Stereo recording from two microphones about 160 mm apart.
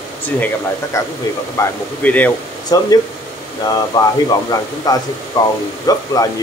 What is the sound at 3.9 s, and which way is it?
A man's voice, 30° left (ahead or behind).